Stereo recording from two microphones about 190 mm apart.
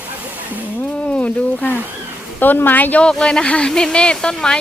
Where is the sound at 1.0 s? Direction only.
5° left (ahead or behind).